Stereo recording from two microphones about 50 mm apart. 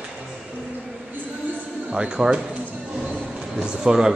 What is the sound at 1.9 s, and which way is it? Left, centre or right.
Speech, centre.